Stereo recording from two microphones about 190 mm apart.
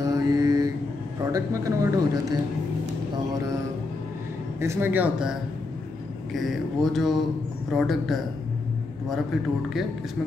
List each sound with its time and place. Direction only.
0.0 s mantra: 15° right (ahead or behind)
1.2 s speech: 15° right (ahead or behind)
4.6 s speech: 15° right (ahead or behind)
6.3 s speech: centre (ahead or behind)